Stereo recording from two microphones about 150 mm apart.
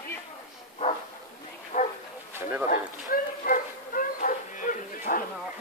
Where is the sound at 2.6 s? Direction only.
60° left (ahead or behind).